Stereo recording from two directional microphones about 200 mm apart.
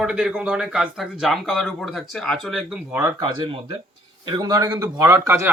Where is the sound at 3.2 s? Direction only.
25° right (ahead or behind).